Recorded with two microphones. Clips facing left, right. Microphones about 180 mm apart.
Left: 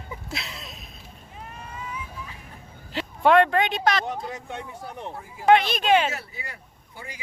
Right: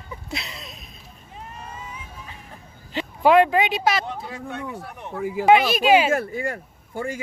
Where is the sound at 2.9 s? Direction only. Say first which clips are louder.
Right 2 dB; centre (ahead or behind).